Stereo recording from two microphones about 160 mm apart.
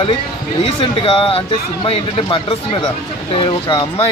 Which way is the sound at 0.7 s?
35° left (ahead or behind).